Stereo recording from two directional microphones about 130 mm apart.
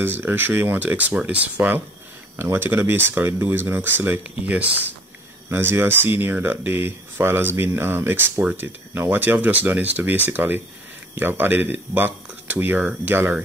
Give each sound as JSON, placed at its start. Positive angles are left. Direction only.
{"t": 0.0, "sound": "speech", "side_deg": -15}